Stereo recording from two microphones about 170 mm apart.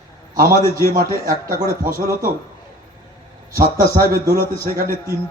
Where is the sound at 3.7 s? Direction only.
20° right (ahead or behind).